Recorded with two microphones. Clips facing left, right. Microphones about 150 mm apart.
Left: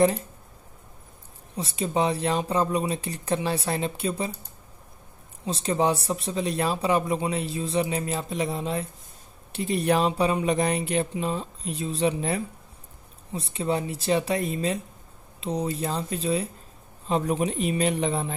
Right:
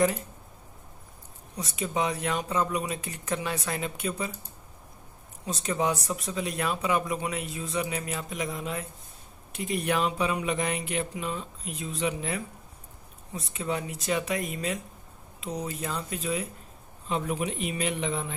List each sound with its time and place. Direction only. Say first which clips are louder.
1.6 s speech: left 4 dB; 30° left (ahead or behind)
5.4 s speech: left 4 dB; 30° left (ahead or behind)